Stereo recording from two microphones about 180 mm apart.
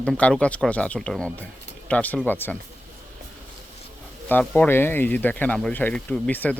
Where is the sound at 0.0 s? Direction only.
5° left (ahead or behind).